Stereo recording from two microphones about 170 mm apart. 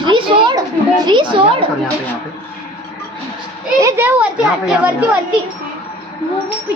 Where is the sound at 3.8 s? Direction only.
15° right (ahead or behind).